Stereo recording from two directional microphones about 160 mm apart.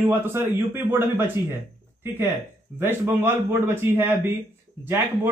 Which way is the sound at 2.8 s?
15° right (ahead or behind).